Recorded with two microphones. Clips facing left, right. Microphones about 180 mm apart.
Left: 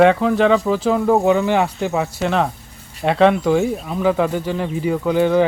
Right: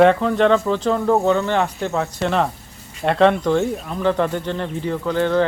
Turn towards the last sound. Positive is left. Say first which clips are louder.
# left 3 dB
turn(degrees=10)  # may be behind; listen again after turning